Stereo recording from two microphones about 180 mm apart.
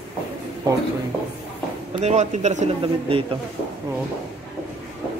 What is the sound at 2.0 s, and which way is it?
A man's voice, 40° right (ahead or behind).